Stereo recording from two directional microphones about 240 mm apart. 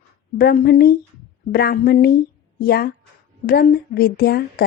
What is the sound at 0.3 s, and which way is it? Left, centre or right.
A woman's voice, left.